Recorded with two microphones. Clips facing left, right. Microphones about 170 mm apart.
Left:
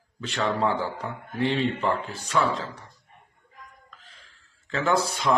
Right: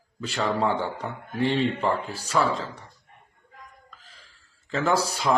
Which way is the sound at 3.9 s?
Centre (ahead or behind).